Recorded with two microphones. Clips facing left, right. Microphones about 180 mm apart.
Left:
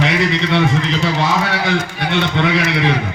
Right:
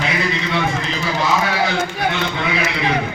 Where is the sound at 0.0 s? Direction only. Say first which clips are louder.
Left 5 dB; 75° left (ahead or behind).